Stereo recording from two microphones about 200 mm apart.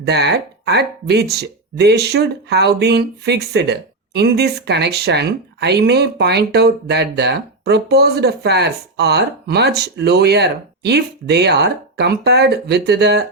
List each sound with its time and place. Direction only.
0.0 s speech: 55° right (ahead or behind)